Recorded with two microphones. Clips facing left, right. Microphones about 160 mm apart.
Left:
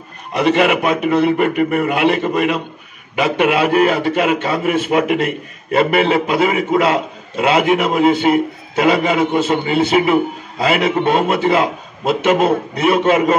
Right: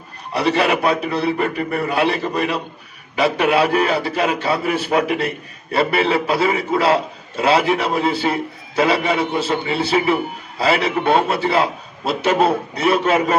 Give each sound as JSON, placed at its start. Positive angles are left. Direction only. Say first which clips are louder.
{"t": 0.3, "sound": "a man's voice", "louder": "left 3 dB", "side_deg": -35}